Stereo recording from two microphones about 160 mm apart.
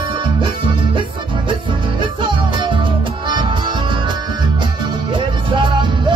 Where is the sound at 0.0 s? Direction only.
30° right (ahead or behind).